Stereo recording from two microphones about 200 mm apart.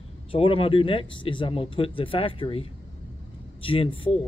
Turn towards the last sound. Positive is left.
turn(degrees=25)  # may be behind; listen again after turning